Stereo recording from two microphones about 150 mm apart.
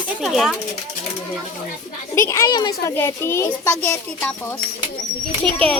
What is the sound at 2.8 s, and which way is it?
A child's voice, 15° left (ahead or behind).